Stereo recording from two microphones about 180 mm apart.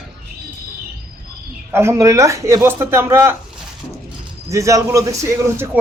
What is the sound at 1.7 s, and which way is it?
Speech, 15° right (ahead or behind).